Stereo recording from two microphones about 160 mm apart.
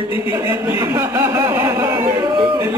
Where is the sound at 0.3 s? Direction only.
20° right (ahead or behind).